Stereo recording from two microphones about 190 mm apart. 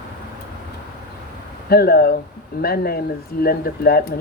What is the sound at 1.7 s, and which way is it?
Speech, 55° left (ahead or behind).